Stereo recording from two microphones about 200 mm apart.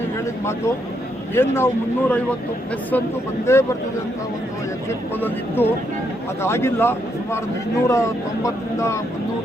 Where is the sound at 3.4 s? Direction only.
15° left (ahead or behind).